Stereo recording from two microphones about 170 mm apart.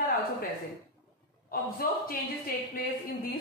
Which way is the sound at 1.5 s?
60° left (ahead or behind).